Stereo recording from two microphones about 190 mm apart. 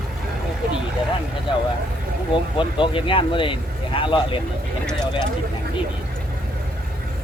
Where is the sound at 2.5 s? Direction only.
25° left (ahead or behind).